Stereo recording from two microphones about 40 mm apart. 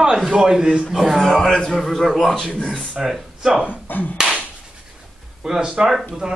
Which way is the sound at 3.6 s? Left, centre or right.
Left.